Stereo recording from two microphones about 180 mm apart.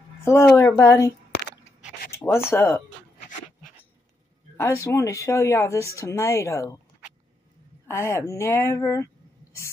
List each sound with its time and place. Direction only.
0.2 s speech: 15° left (ahead or behind)
1.6 s crunch: 40° left (ahead or behind)
2.0 s speech: 15° left (ahead or behind)
4.6 s speech: 15° left (ahead or behind)
7.9 s speech: 15° left (ahead or behind)